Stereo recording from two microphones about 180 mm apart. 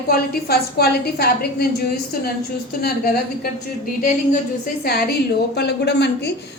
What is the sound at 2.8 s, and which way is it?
Speech, 55° left (ahead or behind).